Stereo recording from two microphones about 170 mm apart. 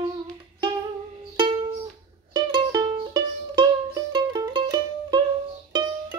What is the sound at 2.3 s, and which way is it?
Music, 25° right (ahead or behind).